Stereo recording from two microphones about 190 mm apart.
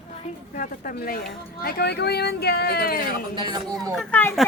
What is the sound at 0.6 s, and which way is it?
Speech, 50° left (ahead or behind).